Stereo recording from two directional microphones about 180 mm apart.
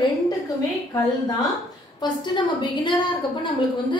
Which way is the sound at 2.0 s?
25° left (ahead or behind).